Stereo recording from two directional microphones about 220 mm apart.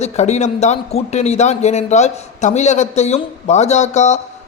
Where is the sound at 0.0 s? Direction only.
30° left (ahead or behind).